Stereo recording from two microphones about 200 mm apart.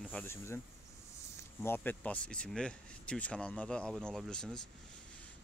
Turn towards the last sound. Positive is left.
turn(degrees=5)  # may be behind; listen again after turning